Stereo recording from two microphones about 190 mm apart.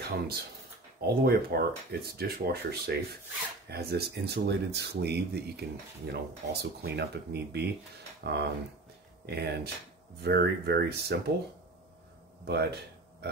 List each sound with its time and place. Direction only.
1.0 s speech: 55° right (ahead or behind)
12.4 s speech: 60° right (ahead or behind)